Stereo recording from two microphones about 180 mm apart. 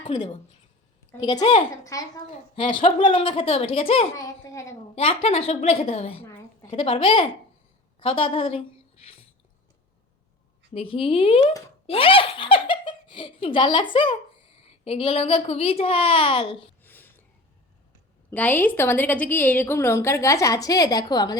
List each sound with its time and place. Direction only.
0.0 s a woman's voice: 25° left (ahead or behind)
1.8 s a woman's voice: 20° left (ahead or behind)
2.8 s a child's voice: 30° left (ahead or behind)
4.4 s a woman's voice: 15° left (ahead or behind)
4.9 s a child's voice: 35° left (ahead or behind)
10.8 s a child's voice: 30° left (ahead or behind)
16.8 s a sound: 10° left (ahead or behind)
18.3 s a woman's voice: 10° left (ahead or behind)